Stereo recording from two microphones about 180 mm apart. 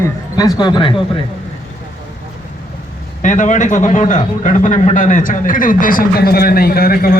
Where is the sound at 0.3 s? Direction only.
20° left (ahead or behind).